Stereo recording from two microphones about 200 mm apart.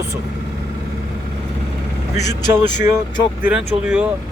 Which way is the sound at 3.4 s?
5° right (ahead or behind).